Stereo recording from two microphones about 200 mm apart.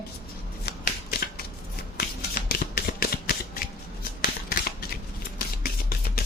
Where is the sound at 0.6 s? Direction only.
50° left (ahead or behind).